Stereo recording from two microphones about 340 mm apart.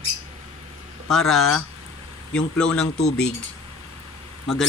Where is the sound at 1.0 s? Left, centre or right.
Centre.